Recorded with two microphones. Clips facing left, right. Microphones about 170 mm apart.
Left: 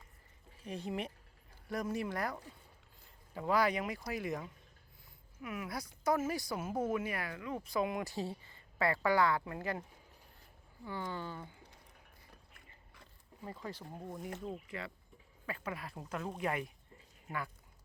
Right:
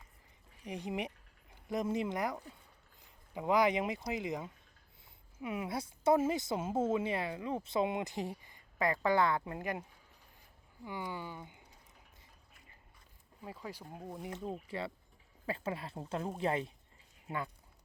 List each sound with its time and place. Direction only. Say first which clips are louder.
0.6 s speech: right 1 dB; 15° right (ahead or behind)
10.8 s speech: even; 15° right (ahead or behind)
13.4 s speech: left 1 dB; 10° right (ahead or behind)
14.5 s speech: right 4 dB; 30° right (ahead or behind)